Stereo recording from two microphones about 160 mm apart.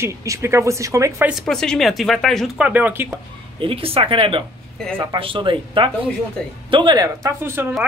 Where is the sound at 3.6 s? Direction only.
35° right (ahead or behind).